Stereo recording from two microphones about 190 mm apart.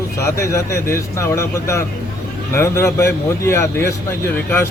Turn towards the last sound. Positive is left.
turn(degrees=15)  # may be behind; listen again after turning